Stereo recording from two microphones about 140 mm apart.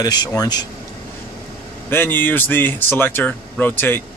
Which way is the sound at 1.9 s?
15° left (ahead or behind).